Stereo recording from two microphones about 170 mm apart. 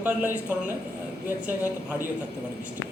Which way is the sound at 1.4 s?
10° right (ahead or behind).